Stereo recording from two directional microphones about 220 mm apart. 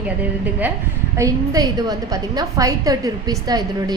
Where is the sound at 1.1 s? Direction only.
15° right (ahead or behind).